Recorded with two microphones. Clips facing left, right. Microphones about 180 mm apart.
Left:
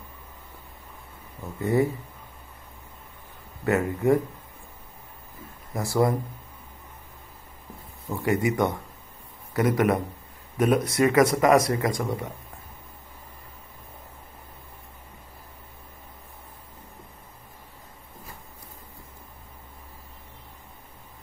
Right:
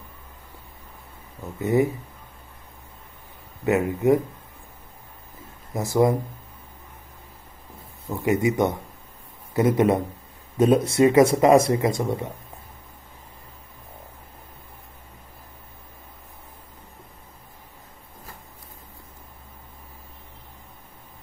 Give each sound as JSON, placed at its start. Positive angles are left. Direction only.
{"t": 1.4, "sound": "speech", "side_deg": -20}
{"t": 3.6, "sound": "speech", "side_deg": -20}
{"t": 5.7, "sound": "speech", "side_deg": -20}
{"t": 8.1, "sound": "speech", "side_deg": -20}